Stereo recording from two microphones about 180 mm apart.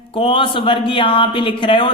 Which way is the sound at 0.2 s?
30° left (ahead or behind).